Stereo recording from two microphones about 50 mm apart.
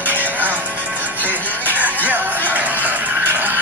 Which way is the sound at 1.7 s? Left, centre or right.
Right.